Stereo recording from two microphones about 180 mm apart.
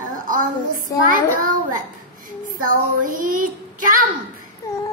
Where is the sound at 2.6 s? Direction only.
50° right (ahead or behind).